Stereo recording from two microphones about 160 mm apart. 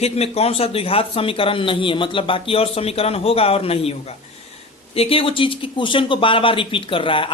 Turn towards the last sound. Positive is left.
turn(degrees=35)  # may be behind; listen again after turning